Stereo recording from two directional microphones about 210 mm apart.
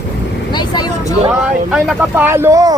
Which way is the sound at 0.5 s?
20° left (ahead or behind).